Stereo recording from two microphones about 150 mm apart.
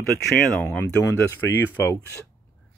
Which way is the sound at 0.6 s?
15° left (ahead or behind).